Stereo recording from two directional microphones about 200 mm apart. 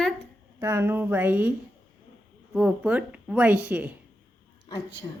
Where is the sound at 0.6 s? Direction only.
15° right (ahead or behind).